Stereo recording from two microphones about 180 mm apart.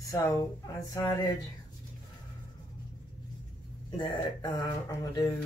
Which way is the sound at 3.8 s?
25° left (ahead or behind).